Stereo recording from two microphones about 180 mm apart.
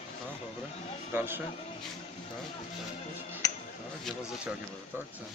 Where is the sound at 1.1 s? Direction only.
10° right (ahead or behind).